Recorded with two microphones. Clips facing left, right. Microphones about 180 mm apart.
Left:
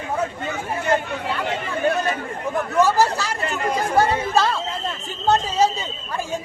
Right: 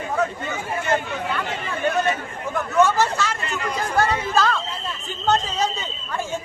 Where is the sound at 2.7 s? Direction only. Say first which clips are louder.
Even; 35° left (ahead or behind).